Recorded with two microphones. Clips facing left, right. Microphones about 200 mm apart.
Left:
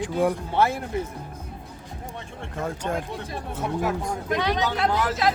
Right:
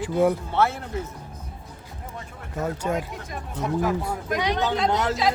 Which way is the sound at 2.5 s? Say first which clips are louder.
Right 2 dB; 5° right (ahead or behind).